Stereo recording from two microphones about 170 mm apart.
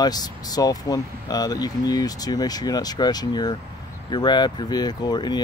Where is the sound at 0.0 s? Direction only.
25° left (ahead or behind).